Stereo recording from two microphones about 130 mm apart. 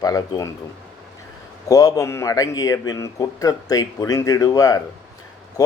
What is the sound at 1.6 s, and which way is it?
A man's voice, 25° left (ahead or behind).